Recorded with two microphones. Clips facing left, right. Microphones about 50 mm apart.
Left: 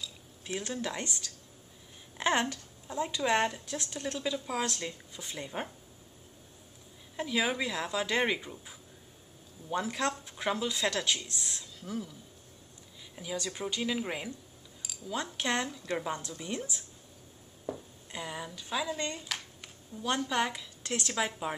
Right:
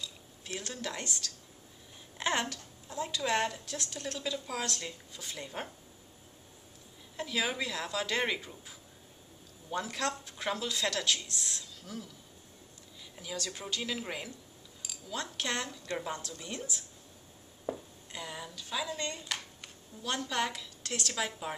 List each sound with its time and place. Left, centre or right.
0.6 s a woman's voice: centre
7.2 s a woman's voice: centre
13.1 s a woman's voice: centre
17.7 s a sound: right
18.1 s speech: centre
19.1 s a sound: centre
20.0 s a woman's voice: centre